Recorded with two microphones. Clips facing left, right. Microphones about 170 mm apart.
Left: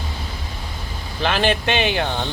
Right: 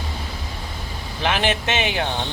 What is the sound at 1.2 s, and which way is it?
Speech, 15° right (ahead or behind).